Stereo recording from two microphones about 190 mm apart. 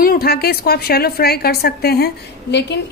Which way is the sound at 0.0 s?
50° left (ahead or behind).